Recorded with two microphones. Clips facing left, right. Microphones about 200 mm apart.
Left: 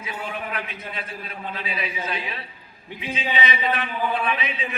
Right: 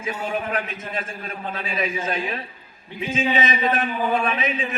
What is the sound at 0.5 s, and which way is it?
A man's voice, 45° right (ahead or behind).